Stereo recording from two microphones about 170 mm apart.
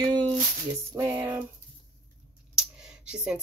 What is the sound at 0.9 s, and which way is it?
Speech, 15° right (ahead or behind).